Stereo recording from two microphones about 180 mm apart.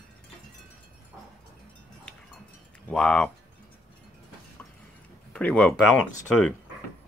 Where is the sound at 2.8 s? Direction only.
5° left (ahead or behind).